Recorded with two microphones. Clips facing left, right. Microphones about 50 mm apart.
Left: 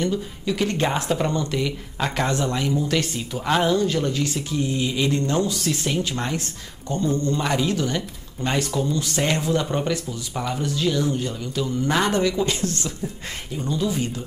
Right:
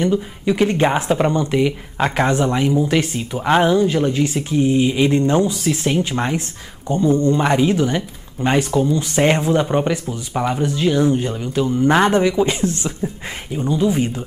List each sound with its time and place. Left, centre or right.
0.0 s speech: right